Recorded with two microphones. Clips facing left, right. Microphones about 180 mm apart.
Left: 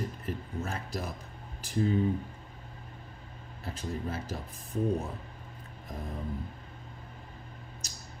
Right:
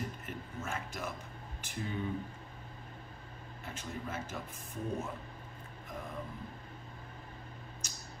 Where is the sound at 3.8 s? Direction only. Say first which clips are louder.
Left 5 dB; 35° left (ahead or behind).